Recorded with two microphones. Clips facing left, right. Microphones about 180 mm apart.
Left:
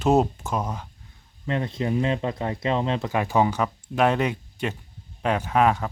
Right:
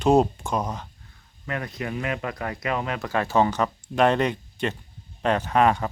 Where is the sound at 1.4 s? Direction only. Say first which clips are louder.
Left 4 dB; 25° left (ahead or behind).